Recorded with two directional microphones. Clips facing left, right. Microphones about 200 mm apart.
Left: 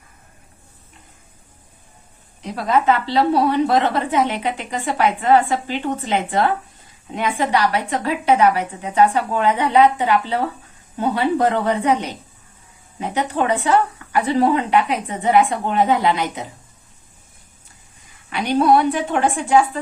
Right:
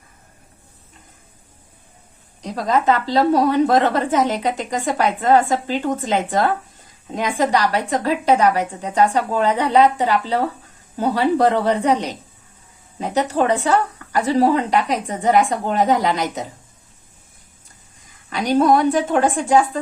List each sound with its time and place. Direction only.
2.6 s a woman's voice: 40° right (ahead or behind)
18.3 s a woman's voice: 40° right (ahead or behind)